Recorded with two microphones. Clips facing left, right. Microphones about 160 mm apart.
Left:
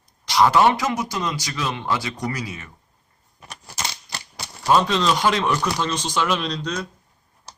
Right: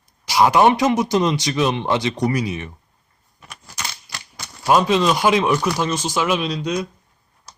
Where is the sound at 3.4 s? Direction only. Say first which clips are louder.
Left 2 dB; 30° left (ahead or behind).